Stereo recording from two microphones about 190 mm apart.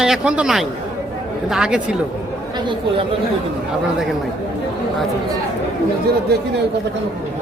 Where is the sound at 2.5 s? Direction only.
25° right (ahead or behind).